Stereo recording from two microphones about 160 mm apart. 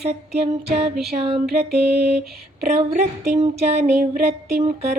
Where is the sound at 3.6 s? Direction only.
45° right (ahead or behind).